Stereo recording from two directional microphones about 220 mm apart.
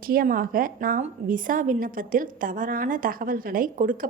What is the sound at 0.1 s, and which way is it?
A woman's voice, 40° right (ahead or behind).